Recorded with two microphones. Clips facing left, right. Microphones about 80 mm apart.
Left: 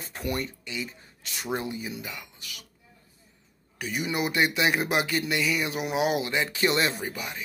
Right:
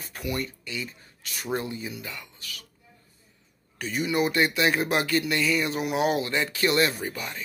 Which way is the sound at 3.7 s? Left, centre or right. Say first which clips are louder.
Right 3 dB; centre.